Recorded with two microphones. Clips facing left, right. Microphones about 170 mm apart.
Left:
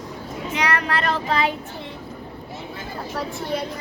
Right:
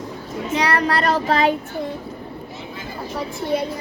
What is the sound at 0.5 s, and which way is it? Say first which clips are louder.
Child singing: right 4 dB; 35° right (ahead or behind).